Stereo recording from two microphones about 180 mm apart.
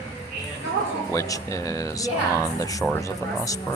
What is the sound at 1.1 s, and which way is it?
Speech, 15° left (ahead or behind).